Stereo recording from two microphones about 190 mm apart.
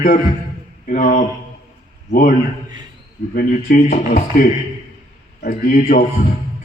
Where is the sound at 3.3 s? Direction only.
50° left (ahead or behind).